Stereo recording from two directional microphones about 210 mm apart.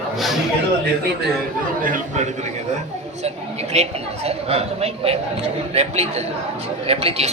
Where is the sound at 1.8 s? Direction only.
35° right (ahead or behind).